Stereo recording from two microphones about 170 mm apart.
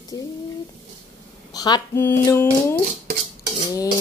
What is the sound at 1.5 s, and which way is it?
Sizzle, 25° left (ahead or behind).